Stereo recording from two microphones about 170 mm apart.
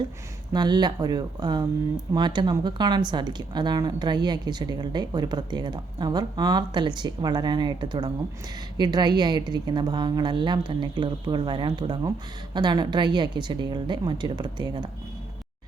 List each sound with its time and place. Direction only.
0.5 s speech: 25° right (ahead or behind)